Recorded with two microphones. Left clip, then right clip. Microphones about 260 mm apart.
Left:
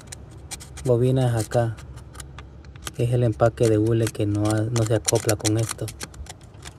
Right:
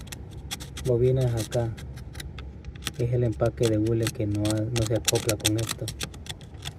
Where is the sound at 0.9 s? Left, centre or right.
Left.